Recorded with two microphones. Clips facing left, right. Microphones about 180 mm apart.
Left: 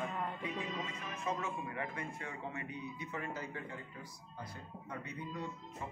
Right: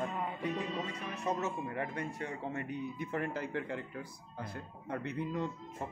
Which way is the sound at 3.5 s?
75° right (ahead or behind).